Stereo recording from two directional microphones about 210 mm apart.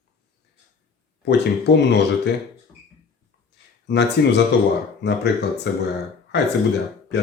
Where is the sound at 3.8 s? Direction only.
55° left (ahead or behind).